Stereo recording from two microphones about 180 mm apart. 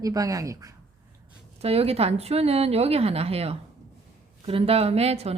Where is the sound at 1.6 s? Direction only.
35° right (ahead or behind).